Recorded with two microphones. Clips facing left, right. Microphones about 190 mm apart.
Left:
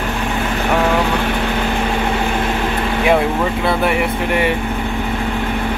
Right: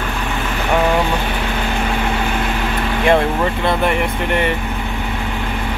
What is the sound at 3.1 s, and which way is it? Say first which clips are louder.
Speech: right 1 dB; 5° left (ahead or behind).